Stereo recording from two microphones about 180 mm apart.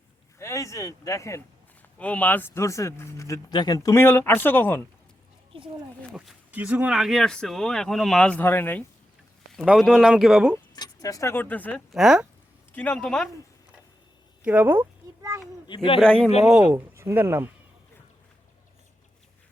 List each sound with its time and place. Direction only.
0.3 s speech: 15° left (ahead or behind)
6.1 s speech: 5° right (ahead or behind); by 8.8 s 10° left (ahead or behind)
9.5 s speech: centre (ahead or behind)
10.8 s speech: 20° left (ahead or behind)
11.9 s speech: centre (ahead or behind)
12.7 s speech: 10° left (ahead or behind)
14.4 s a sound: 10° right (ahead or behind)
15.6 s a man's voice: 25° left (ahead or behind)
16.4 s speech: centre (ahead or behind)
16.7 s speech: 15° right (ahead or behind)